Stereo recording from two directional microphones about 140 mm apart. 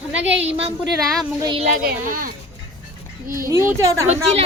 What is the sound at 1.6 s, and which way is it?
Speech, 80° right.